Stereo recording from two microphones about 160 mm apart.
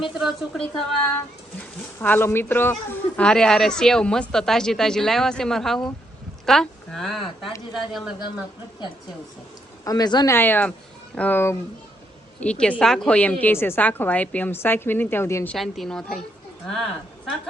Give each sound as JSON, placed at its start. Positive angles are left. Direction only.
{"t": 0.1, "sound": "speech", "side_deg": 0}
{"t": 2.0, "sound": "a woman's voice", "side_deg": 10}
{"t": 9.8, "sound": "speech", "side_deg": 25}
{"t": 10.3, "sound": "a woman's voice", "side_deg": 10}
{"t": 15.5, "sound": "speech", "side_deg": 0}